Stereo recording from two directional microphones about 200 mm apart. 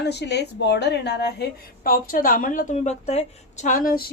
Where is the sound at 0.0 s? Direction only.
55° left (ahead or behind).